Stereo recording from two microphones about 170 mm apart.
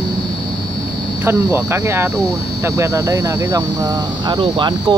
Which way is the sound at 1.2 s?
15° right (ahead or behind).